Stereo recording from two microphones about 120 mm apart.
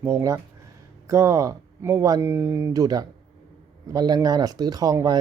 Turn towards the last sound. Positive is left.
turn(degrees=-30)  # may be behind; listen again after turning